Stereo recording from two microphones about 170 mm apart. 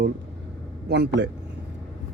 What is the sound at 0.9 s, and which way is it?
Speech, 75° right (ahead or behind).